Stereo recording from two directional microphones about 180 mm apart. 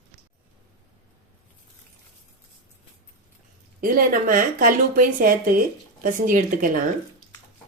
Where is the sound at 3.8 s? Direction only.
50° right (ahead or behind).